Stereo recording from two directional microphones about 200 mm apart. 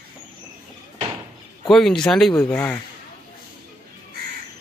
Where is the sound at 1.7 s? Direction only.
Centre (ahead or behind).